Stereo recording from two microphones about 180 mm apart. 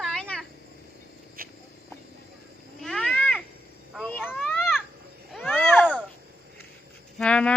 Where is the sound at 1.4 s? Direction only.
55° right (ahead or behind).